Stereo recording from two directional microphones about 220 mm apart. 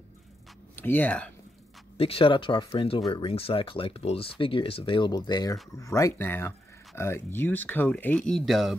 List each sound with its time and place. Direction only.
0.7 s speech: 10° left (ahead or behind)
2.0 s speech: 25° left (ahead or behind); by 8.7 s centre (ahead or behind)